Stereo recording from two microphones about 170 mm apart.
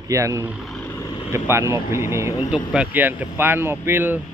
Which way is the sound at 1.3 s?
15° right (ahead or behind).